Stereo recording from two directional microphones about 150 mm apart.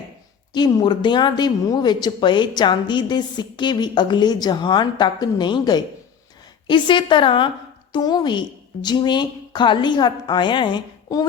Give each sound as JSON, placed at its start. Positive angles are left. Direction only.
{"t": 0.5, "sound": "a woman's voice", "side_deg": 30}